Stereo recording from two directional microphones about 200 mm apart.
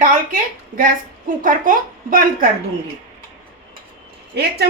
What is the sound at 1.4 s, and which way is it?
Speech, 45° right (ahead or behind).